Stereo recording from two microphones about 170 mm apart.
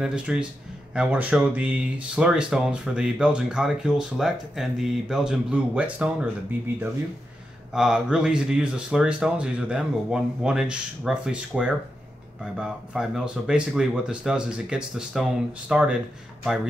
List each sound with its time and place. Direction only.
0.0 s speech: 5° right (ahead or behind)
7.7 s speech: 5° right (ahead or behind)